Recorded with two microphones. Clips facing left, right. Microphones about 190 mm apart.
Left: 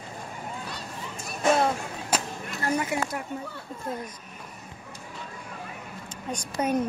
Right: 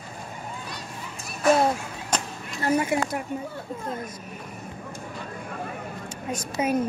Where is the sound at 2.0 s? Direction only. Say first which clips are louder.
Even; 5° left (ahead or behind).